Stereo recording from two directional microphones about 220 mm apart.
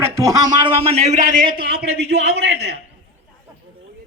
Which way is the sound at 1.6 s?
45° right (ahead or behind).